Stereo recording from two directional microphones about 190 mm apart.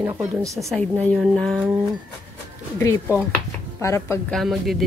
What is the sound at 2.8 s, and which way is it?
Speech, 15° left (ahead or behind).